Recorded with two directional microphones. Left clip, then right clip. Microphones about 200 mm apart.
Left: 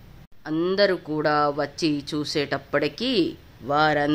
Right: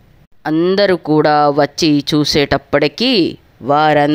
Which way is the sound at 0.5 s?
35° right (ahead or behind).